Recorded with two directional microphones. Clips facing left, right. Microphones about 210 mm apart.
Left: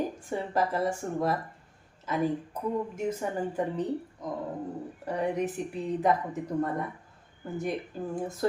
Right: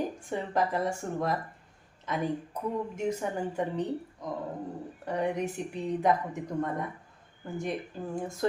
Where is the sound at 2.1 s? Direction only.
5° left (ahead or behind).